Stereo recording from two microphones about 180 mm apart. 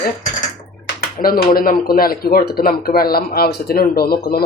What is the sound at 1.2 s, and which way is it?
Speech, 55° left (ahead or behind).